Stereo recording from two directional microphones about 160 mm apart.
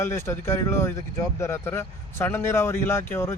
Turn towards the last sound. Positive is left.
turn(degrees=15)  # may be behind; listen again after turning